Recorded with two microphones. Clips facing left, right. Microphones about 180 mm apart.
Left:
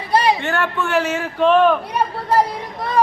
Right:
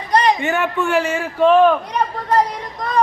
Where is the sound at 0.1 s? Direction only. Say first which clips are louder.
Right 1 dB; 5° left (ahead or behind).